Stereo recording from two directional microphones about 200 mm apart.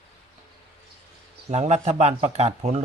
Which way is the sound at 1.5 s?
35° right (ahead or behind).